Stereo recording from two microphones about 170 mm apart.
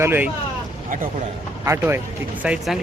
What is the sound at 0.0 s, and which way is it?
Speech, 10° right (ahead or behind).